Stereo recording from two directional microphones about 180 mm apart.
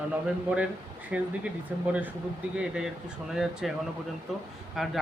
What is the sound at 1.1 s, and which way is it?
A man's voice, 5° right (ahead or behind).